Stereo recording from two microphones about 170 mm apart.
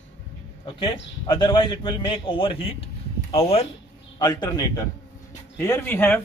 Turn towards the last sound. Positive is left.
turn(degrees=10)  # may be behind; listen again after turning